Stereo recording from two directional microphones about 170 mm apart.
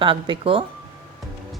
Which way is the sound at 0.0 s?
30° right (ahead or behind).